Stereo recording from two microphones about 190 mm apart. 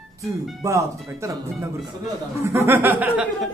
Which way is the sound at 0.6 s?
15° right (ahead or behind).